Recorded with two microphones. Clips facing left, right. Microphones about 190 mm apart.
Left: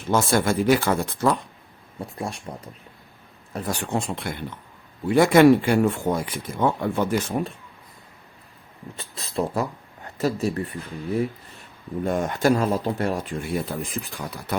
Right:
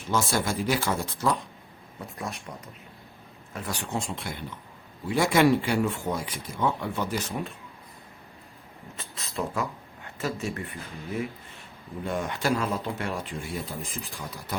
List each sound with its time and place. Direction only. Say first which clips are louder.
0.1 s speech: left 6 dB; 55° left (ahead or behind)
2.0 s speech: left 5 dB; 30° left (ahead or behind)
3.8 s speech: left 5 dB; 60° left (ahead or behind)
9.0 s speech: left 6 dB; 35° left (ahead or behind)
12.0 s speech: left 7 dB; 45° left (ahead or behind)
13.4 s speech: left 7 dB; 65° left (ahead or behind)